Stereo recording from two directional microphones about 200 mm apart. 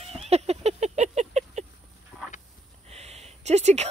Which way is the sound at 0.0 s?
30° right (ahead or behind).